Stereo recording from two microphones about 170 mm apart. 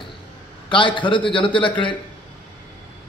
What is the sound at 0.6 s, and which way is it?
A man's voice, 30° left (ahead or behind).